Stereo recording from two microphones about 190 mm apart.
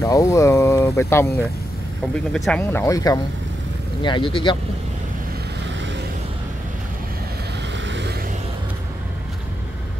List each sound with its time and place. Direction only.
0.0 s speech: 15° left (ahead or behind)
7.8 s music: 70° right (ahead or behind)